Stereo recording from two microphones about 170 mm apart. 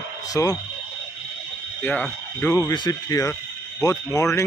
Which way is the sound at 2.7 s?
25° left (ahead or behind).